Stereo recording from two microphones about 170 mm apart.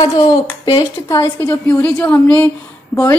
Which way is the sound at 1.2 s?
15° left (ahead or behind).